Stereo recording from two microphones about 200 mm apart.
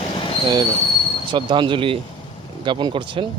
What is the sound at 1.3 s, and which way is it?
Speech, 25° right (ahead or behind).